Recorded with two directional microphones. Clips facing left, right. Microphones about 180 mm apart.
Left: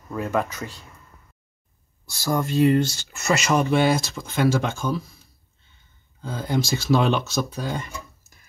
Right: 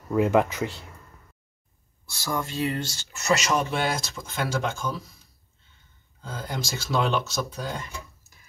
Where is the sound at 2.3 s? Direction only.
50° left (ahead or behind).